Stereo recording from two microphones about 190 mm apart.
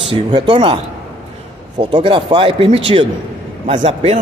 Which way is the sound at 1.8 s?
25° right (ahead or behind).